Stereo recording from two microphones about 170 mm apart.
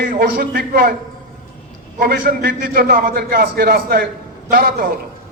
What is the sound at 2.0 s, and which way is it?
A man's voice, 65° right (ahead or behind).